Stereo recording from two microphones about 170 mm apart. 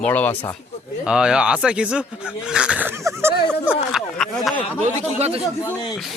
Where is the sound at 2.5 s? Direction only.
5° right (ahead or behind).